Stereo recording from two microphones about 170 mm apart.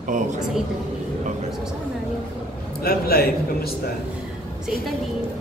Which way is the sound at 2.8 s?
65° left (ahead or behind).